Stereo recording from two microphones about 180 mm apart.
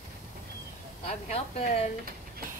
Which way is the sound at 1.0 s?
35° left (ahead or behind).